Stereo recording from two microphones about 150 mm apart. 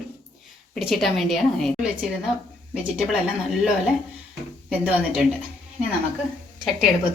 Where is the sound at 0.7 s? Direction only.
Centre (ahead or behind).